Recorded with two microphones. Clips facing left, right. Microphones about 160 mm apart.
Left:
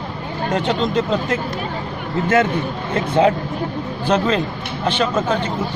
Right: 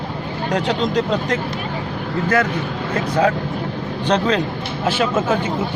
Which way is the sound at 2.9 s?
25° left (ahead or behind).